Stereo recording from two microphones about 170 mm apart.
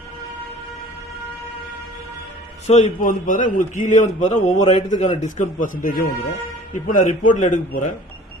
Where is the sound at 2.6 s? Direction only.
40° left (ahead or behind).